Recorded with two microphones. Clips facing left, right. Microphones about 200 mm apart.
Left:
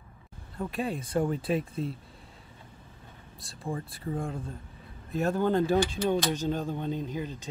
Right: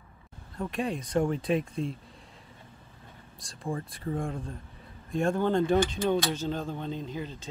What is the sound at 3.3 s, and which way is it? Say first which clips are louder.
Speech: right 1 dB; 5° left (ahead or behind).